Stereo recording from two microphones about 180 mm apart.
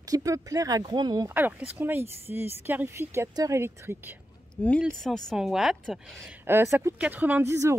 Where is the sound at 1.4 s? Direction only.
10° right (ahead or behind).